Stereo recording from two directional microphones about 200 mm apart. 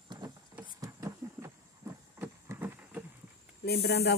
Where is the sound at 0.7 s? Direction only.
15° right (ahead or behind).